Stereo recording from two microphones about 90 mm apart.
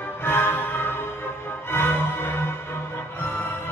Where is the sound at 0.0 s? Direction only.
25° left (ahead or behind).